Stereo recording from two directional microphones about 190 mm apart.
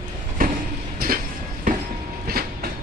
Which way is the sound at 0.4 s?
45° right (ahead or behind).